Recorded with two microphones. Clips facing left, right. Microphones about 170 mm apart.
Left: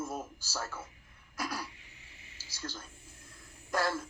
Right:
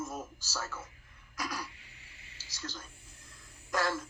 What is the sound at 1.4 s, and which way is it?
Throat clearing, 25° left (ahead or behind).